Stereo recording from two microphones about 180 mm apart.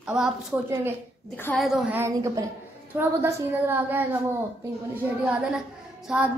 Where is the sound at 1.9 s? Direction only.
15° right (ahead or behind).